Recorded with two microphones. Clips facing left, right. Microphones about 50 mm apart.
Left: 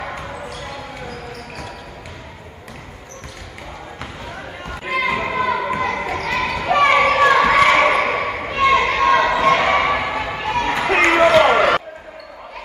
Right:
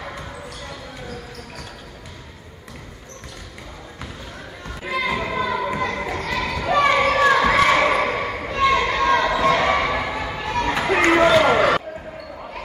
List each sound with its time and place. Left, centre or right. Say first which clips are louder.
0.2 s basketball bounce: left 5 dB; left
4.6 s basketball bounce: left 3 dB; left
10.9 s a sound: left 2 dB; left